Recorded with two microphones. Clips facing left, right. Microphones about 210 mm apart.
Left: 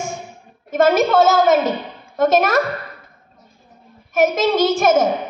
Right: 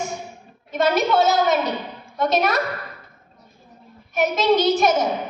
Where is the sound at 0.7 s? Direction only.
45° left (ahead or behind).